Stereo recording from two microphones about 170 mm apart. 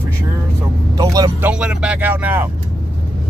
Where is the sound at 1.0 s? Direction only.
25° right (ahead or behind).